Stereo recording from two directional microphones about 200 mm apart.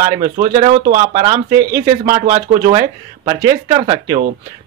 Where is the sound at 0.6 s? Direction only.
40° right (ahead or behind).